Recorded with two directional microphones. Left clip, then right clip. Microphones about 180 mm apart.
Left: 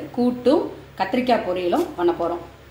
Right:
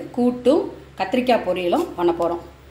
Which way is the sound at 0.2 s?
15° right (ahead or behind).